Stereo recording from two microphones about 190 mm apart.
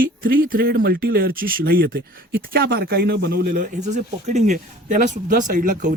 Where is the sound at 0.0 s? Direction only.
50° right (ahead or behind).